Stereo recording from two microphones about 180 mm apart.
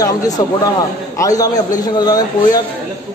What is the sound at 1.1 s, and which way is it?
A man's voice, 20° left (ahead or behind).